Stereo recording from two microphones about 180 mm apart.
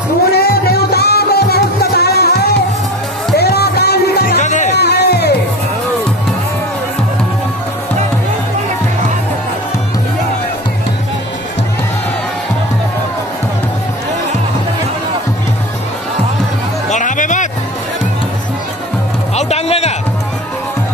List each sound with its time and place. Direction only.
0.3 s music: 60° left (ahead or behind)
4.4 s music: 40° left (ahead or behind)
4.7 s music: 65° left (ahead or behind)
16.9 s music: 45° left (ahead or behind)
19.3 s a sound: 35° left (ahead or behind)